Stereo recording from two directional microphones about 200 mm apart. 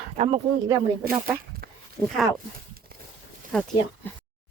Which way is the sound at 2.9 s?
50° right (ahead or behind).